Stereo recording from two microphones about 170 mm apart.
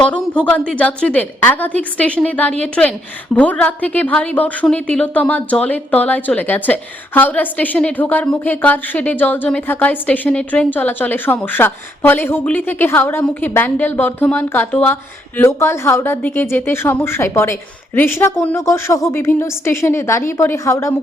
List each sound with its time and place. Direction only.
0.0 s a woman's voice: 10° left (ahead or behind)